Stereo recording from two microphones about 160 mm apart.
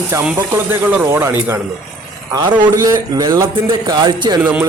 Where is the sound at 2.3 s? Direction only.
25° right (ahead or behind).